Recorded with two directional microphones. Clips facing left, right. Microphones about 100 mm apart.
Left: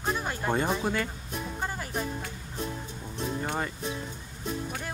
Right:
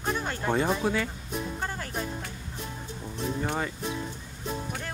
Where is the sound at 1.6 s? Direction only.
10° left (ahead or behind).